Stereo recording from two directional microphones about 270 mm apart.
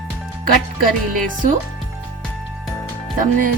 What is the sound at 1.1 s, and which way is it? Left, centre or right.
Speech, right.